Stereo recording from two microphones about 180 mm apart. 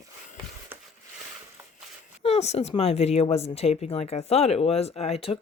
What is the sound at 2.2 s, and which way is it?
Speech, 35° left (ahead or behind).